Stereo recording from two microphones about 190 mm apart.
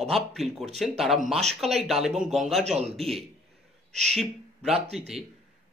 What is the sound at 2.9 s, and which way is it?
A man's voice, centre (ahead or behind).